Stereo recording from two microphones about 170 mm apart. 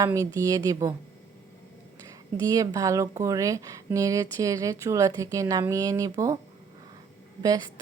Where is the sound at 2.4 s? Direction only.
20° right (ahead or behind).